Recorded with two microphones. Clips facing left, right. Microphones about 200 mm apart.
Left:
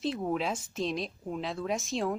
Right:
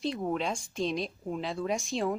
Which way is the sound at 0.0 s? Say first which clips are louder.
Even; centre (ahead or behind).